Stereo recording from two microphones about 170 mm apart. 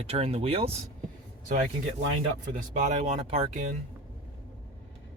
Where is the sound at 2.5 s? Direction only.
45° right (ahead or behind).